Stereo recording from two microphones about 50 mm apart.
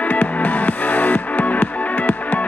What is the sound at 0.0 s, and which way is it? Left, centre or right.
Music, left.